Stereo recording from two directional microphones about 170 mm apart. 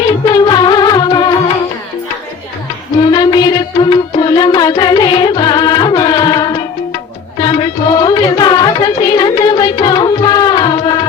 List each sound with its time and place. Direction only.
0.1 s music: 25° left (ahead or behind)
3.0 s music: 25° left (ahead or behind)